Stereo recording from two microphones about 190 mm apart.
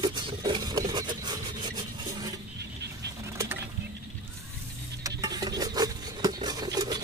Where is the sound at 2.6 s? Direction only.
60° right (ahead or behind).